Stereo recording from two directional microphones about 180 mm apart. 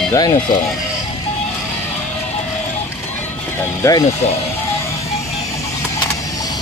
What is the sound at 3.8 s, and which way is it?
Speech, 20° left (ahead or behind).